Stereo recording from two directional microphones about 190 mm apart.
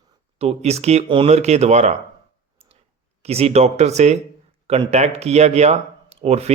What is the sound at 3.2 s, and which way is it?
Speech, 30° right (ahead or behind).